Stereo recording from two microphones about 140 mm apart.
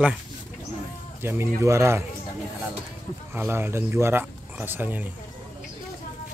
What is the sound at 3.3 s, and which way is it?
Speech, 15° right (ahead or behind).